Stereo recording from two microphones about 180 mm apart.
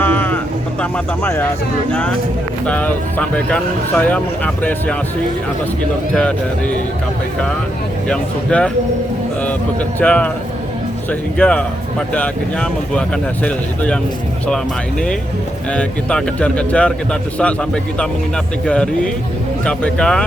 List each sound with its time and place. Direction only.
0.0 s a sound: 10° left (ahead or behind)
0.8 s speech: 10° left (ahead or behind)
8.0 s speech: 5° left (ahead or behind)
10.0 s speech: 5° left (ahead or behind)
15.7 s speech: 5° left (ahead or behind)